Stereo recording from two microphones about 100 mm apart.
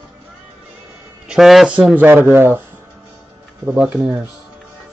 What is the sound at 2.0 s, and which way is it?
Speech, 20° right (ahead or behind).